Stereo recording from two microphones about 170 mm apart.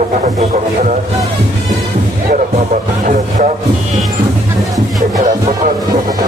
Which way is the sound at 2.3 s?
45° right (ahead or behind).